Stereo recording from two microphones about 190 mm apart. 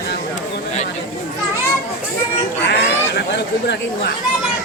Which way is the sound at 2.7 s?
60° left (ahead or behind).